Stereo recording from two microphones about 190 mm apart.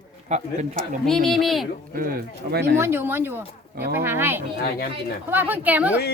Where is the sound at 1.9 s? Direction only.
50° right (ahead or behind).